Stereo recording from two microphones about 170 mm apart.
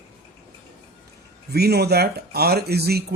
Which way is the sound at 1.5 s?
70° right (ahead or behind).